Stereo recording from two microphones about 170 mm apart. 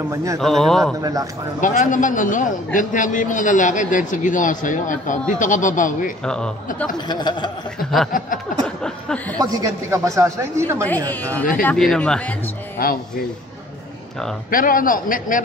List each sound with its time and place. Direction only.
0.1 s a man's voice: 20° right (ahead or behind)
0.4 s a man's voice: centre (ahead or behind)
1.6 s a man's voice: 50° left (ahead or behind)
6.2 s a man's voice: 5° left (ahead or behind)
7.1 s speech: 25° left (ahead or behind)
8.1 s a man's voice: 55° left (ahead or behind)
8.6 s a sound: 5° left (ahead or behind)
9.4 s a man's voice: 20° right (ahead or behind)
11.1 s speech: 10° left (ahead or behind)
12.8 s a man's voice: 60° left (ahead or behind)
14.5 s a man's voice: 55° left (ahead or behind)